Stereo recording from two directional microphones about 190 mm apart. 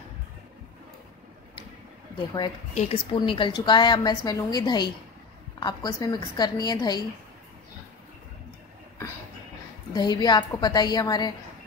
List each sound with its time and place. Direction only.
2.7 s a woman's voice: 30° left (ahead or behind)
9.9 s a woman's voice: 20° left (ahead or behind)